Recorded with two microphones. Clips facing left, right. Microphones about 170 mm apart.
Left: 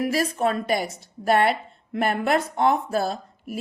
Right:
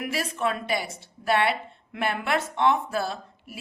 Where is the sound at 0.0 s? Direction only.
40° left (ahead or behind).